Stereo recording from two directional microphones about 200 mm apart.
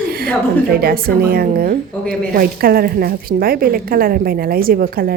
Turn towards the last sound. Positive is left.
turn(degrees=-45)  # may be behind; listen again after turning